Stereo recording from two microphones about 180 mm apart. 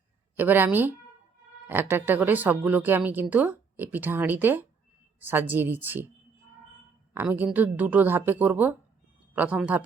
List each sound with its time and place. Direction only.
0.3 s a woman's voice: 10° right (ahead or behind)
7.1 s a woman's voice: 10° right (ahead or behind)